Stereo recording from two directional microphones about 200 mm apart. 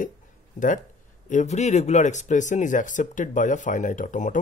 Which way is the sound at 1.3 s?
35° left (ahead or behind).